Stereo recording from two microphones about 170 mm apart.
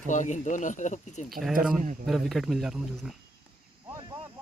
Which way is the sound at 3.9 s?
20° right (ahead or behind).